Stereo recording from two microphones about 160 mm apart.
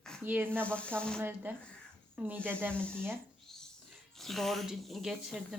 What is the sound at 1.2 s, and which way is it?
Speech, 10° right (ahead or behind).